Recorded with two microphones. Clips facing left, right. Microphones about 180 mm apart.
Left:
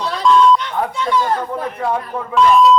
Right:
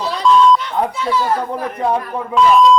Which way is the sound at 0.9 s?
5° right (ahead or behind).